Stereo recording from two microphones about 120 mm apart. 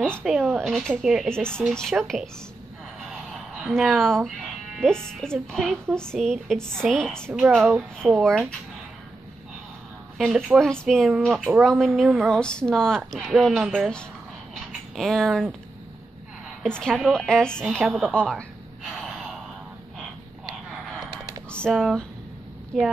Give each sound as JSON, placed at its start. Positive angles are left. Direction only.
{"t": 0.2, "sound": "a woman's voice", "side_deg": -5}
{"t": 3.1, "sound": "a sound", "side_deg": -5}
{"t": 4.7, "sound": "speech", "side_deg": 5}
{"t": 7.3, "sound": "speech", "side_deg": -10}
{"t": 8.2, "sound": "speech", "side_deg": 5}
{"t": 10.1, "sound": "a woman's voice", "side_deg": -5}
{"t": 14.5, "sound": "a sound", "side_deg": 0}
{"t": 16.6, "sound": "a woman's voice", "side_deg": 5}
{"t": 18.9, "sound": "gasp", "side_deg": -5}
{"t": 21.5, "sound": "speech", "side_deg": 5}